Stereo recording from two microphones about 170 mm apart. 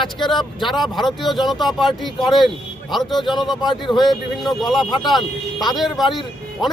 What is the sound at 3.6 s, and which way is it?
Speech, 25° left (ahead or behind).